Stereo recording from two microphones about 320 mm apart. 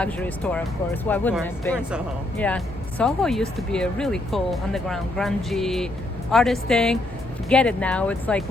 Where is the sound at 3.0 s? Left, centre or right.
Centre.